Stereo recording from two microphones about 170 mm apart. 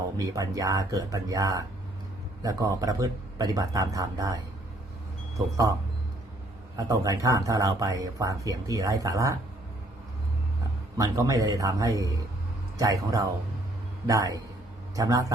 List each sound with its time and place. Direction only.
0.2 s speech: 20° right (ahead or behind)
5.4 s speech: 20° right (ahead or behind)
6.7 s speech: 20° right (ahead or behind)
10.9 s speech: 20° right (ahead or behind)